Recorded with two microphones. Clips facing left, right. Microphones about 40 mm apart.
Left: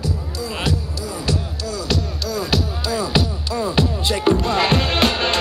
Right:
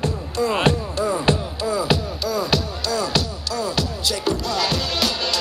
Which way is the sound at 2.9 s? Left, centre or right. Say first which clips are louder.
Left 2 dB; centre.